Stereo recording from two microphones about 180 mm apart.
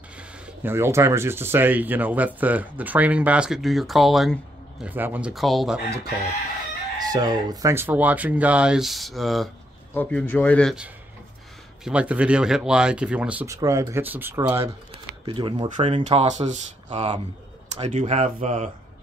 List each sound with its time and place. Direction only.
0.7 s speech: 15° right (ahead or behind)
7.1 s speech: 20° right (ahead or behind)
15.2 s speech: 30° right (ahead or behind)